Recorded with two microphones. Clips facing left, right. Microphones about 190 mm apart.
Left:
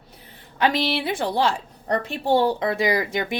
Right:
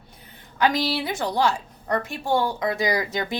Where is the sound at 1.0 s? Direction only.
25° left (ahead or behind).